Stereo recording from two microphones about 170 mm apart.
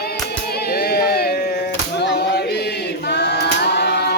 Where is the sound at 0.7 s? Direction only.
70° left (ahead or behind).